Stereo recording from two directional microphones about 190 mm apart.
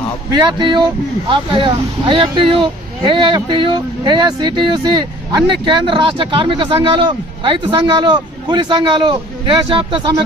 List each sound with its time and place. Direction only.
0.4 s speech: 25° right (ahead or behind)